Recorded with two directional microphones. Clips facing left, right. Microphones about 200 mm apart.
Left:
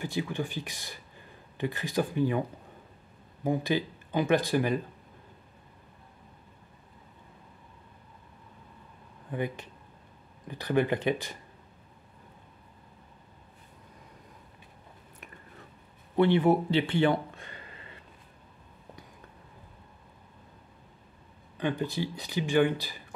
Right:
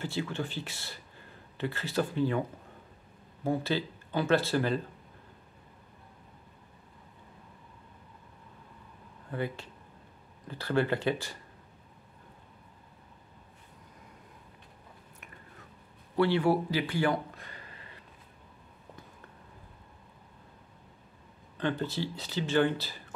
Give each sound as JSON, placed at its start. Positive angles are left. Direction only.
{"t": 0.0, "sound": "speech", "side_deg": 15}
{"t": 3.4, "sound": "speech", "side_deg": 15}
{"t": 9.3, "sound": "speech", "side_deg": 15}
{"t": 16.2, "sound": "speech", "side_deg": 20}
{"t": 21.5, "sound": "speech", "side_deg": 15}